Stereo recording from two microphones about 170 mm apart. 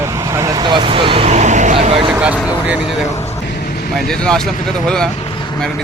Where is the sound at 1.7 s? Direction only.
30° right (ahead or behind).